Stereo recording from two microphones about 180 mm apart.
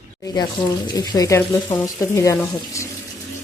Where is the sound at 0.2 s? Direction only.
20° left (ahead or behind).